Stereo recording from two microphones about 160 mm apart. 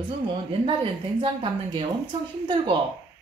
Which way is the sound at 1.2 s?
30° right (ahead or behind).